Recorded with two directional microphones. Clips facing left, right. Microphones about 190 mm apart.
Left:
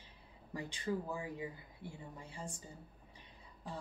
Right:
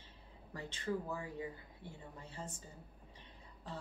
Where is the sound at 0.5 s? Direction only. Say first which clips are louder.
Left 1 dB; 15° left (ahead or behind).